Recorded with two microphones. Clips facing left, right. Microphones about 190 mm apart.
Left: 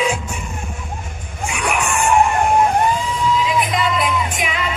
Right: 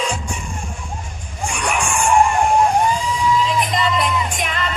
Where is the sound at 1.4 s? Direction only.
5° left (ahead or behind).